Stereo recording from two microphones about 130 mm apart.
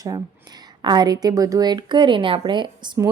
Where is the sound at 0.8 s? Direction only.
30° right (ahead or behind).